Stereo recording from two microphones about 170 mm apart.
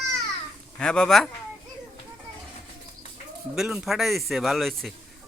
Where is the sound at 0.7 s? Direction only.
5° left (ahead or behind).